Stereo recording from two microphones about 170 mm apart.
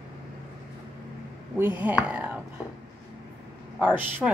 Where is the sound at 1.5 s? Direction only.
10° right (ahead or behind).